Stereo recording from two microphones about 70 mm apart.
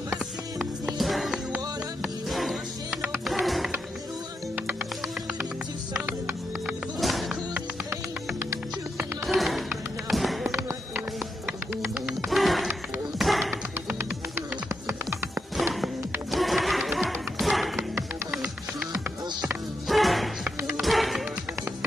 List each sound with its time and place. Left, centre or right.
0.6 s music: centre
5.9 s music: right
7.0 s music: centre
8.4 s music: right
9.2 s music: centre
11.7 s bird: right
12.3 s a sound: centre
13.7 s music: right
16.3 s music: centre
19.9 s music: centre